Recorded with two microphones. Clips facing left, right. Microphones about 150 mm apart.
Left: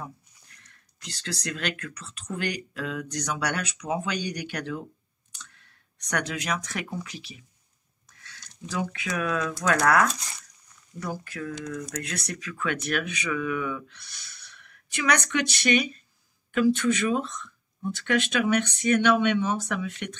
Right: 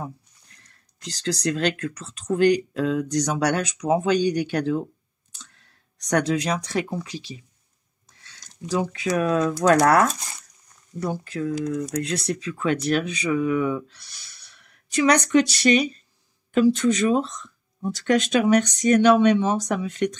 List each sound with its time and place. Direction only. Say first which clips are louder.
1.0 s speech: right 9 dB; 35° right (ahead or behind)
6.0 s speech: right 8 dB; 35° right (ahead or behind)
11.0 s speech: right 6 dB; 30° right (ahead or behind)